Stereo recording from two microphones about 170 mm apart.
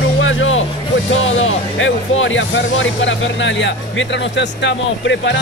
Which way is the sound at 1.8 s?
90° left.